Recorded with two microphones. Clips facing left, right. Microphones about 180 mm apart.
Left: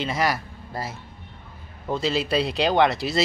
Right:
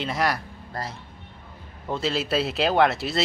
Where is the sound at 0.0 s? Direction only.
Centre (ahead or behind).